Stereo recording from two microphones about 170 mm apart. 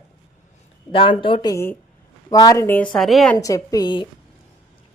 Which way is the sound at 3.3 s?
20° left (ahead or behind).